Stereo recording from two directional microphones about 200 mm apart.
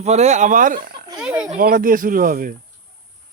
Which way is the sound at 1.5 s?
45° right (ahead or behind).